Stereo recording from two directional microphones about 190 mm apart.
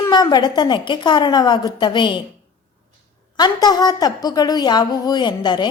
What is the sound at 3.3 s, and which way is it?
A woman's voice, 20° left (ahead or behind).